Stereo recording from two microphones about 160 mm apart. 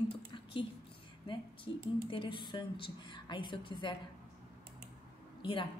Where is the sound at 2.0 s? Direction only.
30° left (ahead or behind).